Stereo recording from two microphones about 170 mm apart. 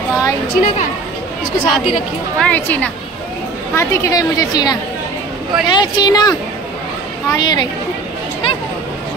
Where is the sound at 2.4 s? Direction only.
10° left (ahead or behind); by 6.3 s 25° left (ahead or behind).